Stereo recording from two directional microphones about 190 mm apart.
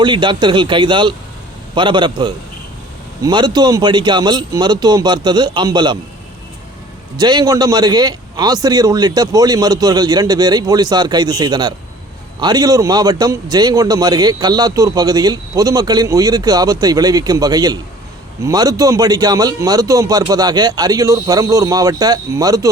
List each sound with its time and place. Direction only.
0.0 s a man's voice: 25° right (ahead or behind)
7.2 s a man's voice: 20° right (ahead or behind)